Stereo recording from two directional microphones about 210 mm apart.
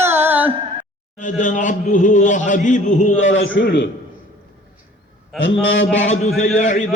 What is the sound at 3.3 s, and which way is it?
Speech, 65° left (ahead or behind).